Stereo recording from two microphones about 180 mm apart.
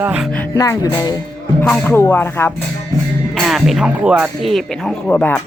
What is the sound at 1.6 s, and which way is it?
Speech, 5° left (ahead or behind).